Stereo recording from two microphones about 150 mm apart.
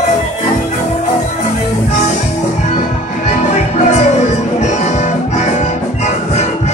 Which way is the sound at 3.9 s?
50° left (ahead or behind).